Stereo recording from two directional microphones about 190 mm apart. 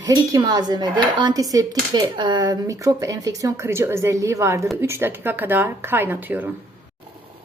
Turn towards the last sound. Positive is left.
turn(degrees=-10)  # may be behind; listen again after turning